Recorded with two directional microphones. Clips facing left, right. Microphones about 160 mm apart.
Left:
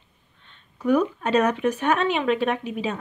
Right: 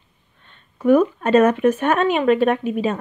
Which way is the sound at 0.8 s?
50° right (ahead or behind).